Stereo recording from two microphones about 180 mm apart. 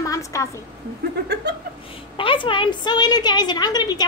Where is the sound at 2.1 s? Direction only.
30° left (ahead or behind).